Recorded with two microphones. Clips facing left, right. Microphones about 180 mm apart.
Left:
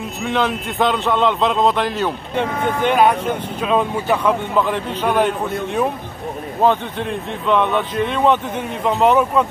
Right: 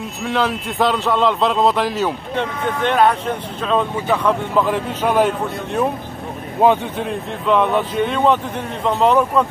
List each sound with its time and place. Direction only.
0.2 s speech: centre (ahead or behind)
2.3 s speech: 5° left (ahead or behind)